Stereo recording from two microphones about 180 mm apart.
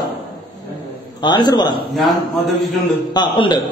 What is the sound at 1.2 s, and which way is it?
Speech, 25° left (ahead or behind).